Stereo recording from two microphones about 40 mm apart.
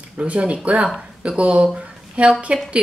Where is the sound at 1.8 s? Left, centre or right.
Right.